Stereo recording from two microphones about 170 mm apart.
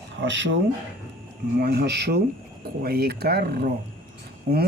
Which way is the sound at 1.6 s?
70° right (ahead or behind).